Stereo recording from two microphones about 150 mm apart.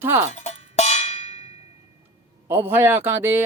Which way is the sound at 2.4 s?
15° right (ahead or behind).